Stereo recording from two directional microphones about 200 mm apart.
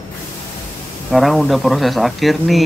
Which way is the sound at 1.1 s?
Centre (ahead or behind).